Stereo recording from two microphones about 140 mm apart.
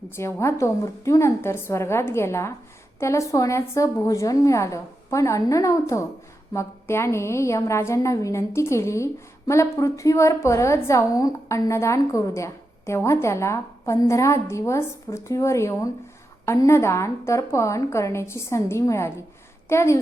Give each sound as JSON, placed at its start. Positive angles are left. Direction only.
{"t": 0.2, "sound": "a woman's voice", "side_deg": 20}